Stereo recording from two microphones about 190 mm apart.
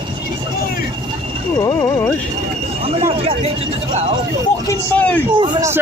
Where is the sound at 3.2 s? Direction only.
30° right (ahead or behind).